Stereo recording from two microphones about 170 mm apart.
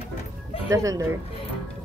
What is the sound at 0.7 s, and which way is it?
Speech, 20° right (ahead or behind).